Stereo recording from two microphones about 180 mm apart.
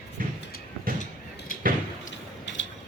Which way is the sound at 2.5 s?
85° left.